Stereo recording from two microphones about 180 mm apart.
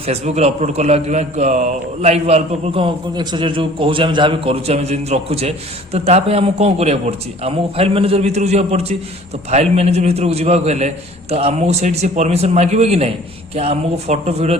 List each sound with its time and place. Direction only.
0.0 s a man's voice: 35° right (ahead or behind)